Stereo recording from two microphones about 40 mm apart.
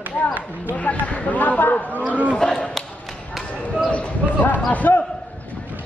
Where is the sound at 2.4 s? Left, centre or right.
Left.